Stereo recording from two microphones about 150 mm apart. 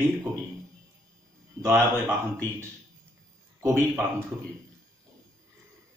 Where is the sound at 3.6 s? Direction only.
15° right (ahead or behind).